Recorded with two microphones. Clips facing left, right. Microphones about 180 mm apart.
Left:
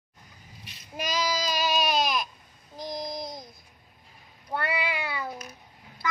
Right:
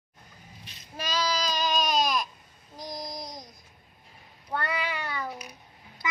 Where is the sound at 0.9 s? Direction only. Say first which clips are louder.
Left 1 dB; 10° left (ahead or behind).